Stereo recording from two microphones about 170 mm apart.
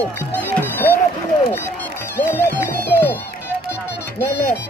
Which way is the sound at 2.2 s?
10° left (ahead or behind).